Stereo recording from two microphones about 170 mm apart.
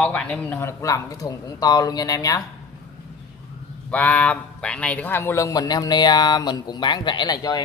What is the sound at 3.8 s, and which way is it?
A man's voice, 10° left (ahead or behind).